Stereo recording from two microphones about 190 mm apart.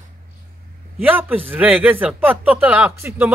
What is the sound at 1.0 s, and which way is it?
Speech, 10° right (ahead or behind).